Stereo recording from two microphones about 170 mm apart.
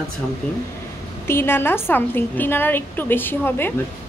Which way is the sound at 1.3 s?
15° left (ahead or behind).